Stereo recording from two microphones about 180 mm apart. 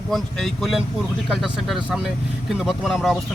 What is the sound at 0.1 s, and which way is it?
Speech, centre (ahead or behind).